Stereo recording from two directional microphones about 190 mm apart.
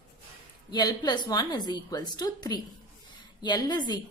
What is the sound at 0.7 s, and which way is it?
A woman's voice, 20° left (ahead or behind).